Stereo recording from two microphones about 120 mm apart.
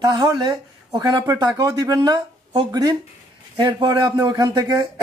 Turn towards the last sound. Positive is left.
turn(degrees=-35)  # may be behind; listen again after turning